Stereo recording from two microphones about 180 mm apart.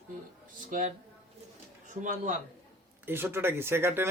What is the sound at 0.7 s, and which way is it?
Speech, 45° right (ahead or behind).